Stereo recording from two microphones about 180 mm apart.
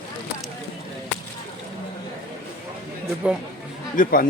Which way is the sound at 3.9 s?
50° left (ahead or behind).